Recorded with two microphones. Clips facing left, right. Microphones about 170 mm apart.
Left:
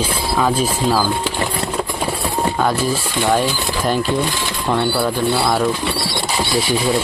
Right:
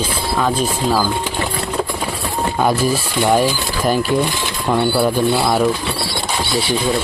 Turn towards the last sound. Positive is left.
turn(degrees=-10)  # may be behind; listen again after turning